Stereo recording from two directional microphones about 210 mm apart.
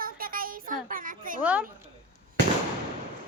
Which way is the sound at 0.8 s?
40° right (ahead or behind).